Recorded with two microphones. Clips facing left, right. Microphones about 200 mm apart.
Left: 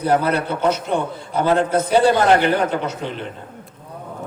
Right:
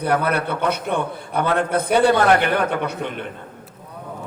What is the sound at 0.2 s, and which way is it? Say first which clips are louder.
A man's voice: left 2 dB; 60° right (ahead or behind).